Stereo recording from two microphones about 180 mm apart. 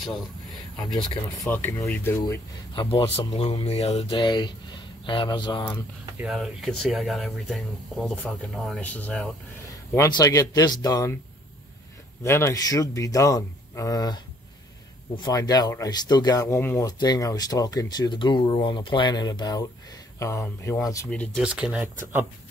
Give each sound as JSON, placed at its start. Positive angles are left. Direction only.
{"t": 0.8, "sound": "speech", "side_deg": 0}
{"t": 2.7, "sound": "speech", "side_deg": 25}
{"t": 4.2, "sound": "speech", "side_deg": 25}
{"t": 6.2, "sound": "speech", "side_deg": 0}
{"t": 9.9, "sound": "speech", "side_deg": 20}
{"t": 12.2, "sound": "speech", "side_deg": 15}
{"t": 21.1, "sound": "speech", "side_deg": 5}